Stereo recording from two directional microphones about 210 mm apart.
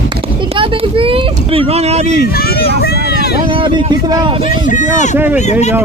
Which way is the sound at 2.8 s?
50° left (ahead or behind).